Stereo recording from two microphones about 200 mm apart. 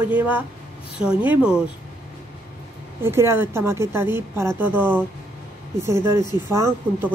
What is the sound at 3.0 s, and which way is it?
A woman's voice, 10° right (ahead or behind).